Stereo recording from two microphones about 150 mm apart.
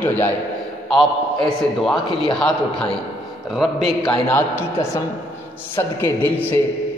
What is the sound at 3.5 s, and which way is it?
Speech, centre (ahead or behind).